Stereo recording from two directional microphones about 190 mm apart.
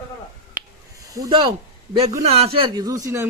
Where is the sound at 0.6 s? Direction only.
20° right (ahead or behind).